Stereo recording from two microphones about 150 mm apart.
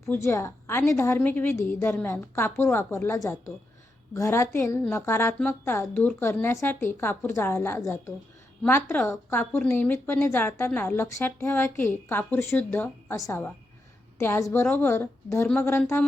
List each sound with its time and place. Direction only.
0.1 s a woman's voice: 15° left (ahead or behind)